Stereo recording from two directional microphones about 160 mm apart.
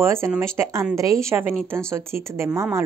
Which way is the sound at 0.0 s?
15° right (ahead or behind).